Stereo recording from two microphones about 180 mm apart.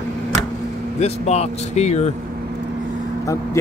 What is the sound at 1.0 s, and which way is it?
Speech, 35° left (ahead or behind).